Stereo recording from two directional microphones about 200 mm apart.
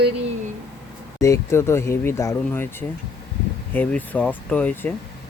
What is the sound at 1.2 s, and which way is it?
Speech, 15° left (ahead or behind).